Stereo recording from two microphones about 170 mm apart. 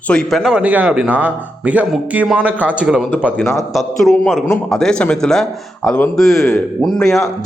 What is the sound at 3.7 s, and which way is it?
A man's voice, centre (ahead or behind).